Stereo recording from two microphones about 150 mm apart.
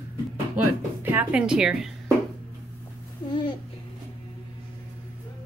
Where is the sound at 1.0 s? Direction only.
10° right (ahead or behind).